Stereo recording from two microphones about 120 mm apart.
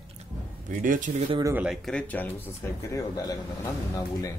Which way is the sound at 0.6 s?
90° right.